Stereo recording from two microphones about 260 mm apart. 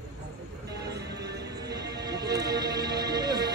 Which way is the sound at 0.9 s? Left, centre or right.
Right.